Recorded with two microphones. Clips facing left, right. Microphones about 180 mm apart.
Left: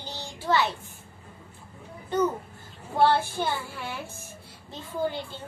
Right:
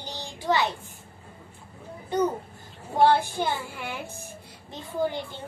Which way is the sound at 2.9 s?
15° right (ahead or behind).